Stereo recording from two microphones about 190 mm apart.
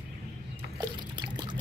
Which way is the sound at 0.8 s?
20° right (ahead or behind).